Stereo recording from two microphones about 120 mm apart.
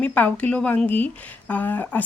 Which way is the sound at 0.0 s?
15° left (ahead or behind).